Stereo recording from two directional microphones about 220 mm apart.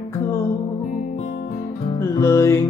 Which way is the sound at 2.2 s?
15° left (ahead or behind).